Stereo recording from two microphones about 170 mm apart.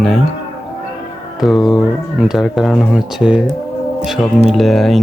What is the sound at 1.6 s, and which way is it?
Speech, 25° left (ahead or behind).